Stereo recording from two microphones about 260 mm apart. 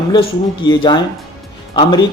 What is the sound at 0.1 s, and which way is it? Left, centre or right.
Speech, centre.